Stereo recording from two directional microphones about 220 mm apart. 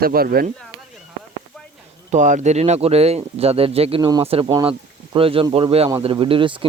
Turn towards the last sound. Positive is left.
turn(degrees=-25)  # may be behind; listen again after turning